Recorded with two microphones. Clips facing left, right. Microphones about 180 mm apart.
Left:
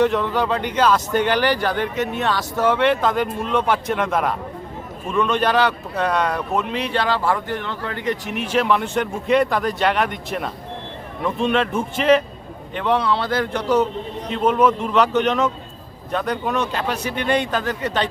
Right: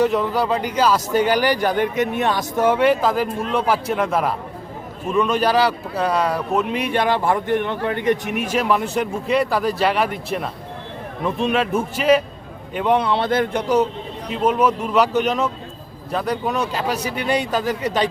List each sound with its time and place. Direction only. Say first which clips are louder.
0.0 s a man's voice: even; 5° right (ahead or behind)
8.2 s speech: right 3 dB; 50° right (ahead or behind)
8.5 s a man's voice: left 1 dB; 5° right (ahead or behind)